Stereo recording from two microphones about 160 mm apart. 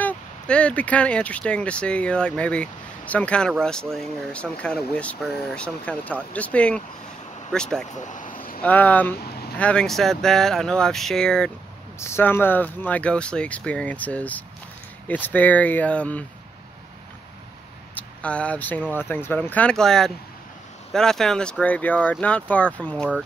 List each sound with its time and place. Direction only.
0.0 s speech: 5° left (ahead or behind)
8.0 s a sound: 55° left (ahead or behind)
8.6 s speech: 10° left (ahead or behind)
12.0 s speech: 15° left (ahead or behind)
17.9 s speech: 10° left (ahead or behind)